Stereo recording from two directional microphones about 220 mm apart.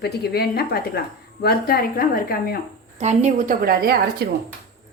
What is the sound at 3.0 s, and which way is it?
A woman's voice, 30° right (ahead or behind).